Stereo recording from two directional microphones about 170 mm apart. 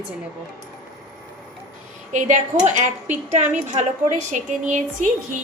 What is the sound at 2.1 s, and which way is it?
A woman's voice, 45° right (ahead or behind).